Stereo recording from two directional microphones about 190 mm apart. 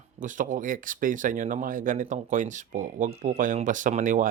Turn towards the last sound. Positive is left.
turn(degrees=-45)  # may be behind; listen again after turning